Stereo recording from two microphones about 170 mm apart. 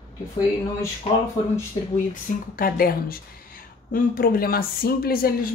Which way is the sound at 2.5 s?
60° left (ahead or behind).